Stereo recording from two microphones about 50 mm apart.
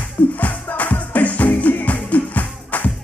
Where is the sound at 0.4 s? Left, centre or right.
Left.